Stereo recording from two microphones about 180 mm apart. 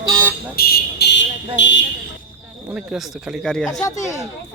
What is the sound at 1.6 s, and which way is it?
Speech, 90° left.